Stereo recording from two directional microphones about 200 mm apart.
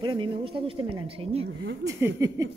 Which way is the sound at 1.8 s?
15° right (ahead or behind).